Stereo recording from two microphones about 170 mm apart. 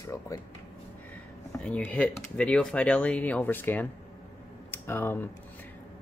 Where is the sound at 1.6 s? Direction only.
5° left (ahead or behind).